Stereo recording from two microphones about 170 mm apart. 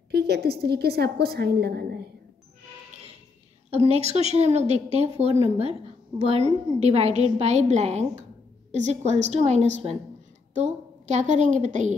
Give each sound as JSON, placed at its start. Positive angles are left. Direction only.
{"t": 0.1, "sound": "a woman's voice", "side_deg": -70}
{"t": 3.7, "sound": "a woman's voice", "side_deg": -35}